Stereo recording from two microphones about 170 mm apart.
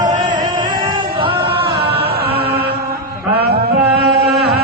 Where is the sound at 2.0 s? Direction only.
70° right (ahead or behind).